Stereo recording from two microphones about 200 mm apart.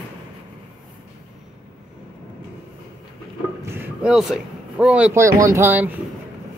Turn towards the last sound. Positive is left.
turn(degrees=-10)  # may be behind; listen again after turning